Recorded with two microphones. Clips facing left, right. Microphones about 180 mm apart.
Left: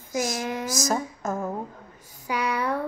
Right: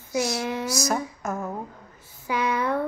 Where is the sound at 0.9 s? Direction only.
25° left (ahead or behind).